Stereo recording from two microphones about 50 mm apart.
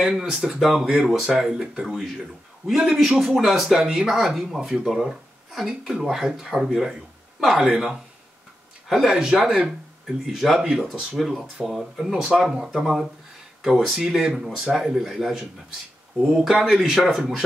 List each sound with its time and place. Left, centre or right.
0.0 s speech: centre
3.0 s speech: centre